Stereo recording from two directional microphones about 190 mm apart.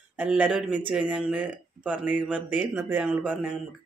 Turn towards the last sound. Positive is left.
turn(degrees=-5)  # may be behind; listen again after turning